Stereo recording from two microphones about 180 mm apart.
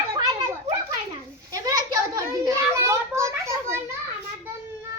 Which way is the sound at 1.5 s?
20° right (ahead or behind).